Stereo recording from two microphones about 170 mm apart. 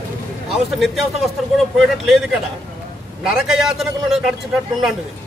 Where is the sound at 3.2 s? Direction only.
Centre (ahead or behind).